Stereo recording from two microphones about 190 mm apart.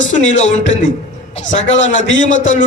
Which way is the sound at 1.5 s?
40° left (ahead or behind).